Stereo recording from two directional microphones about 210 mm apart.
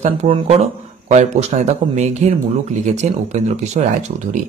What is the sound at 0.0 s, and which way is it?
Speech, 25° right (ahead or behind).